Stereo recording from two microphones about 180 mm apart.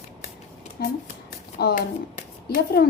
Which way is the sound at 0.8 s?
60° left (ahead or behind).